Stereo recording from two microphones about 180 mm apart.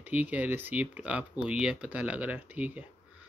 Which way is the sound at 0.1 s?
10° right (ahead or behind).